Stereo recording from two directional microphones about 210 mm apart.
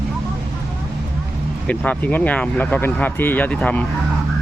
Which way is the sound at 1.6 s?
5° left (ahead or behind).